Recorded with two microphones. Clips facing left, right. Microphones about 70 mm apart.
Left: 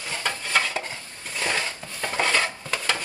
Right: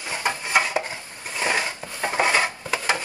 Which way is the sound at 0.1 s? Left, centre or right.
Centre.